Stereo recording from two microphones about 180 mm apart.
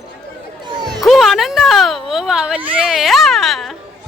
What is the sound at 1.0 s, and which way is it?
Speech, centre (ahead or behind).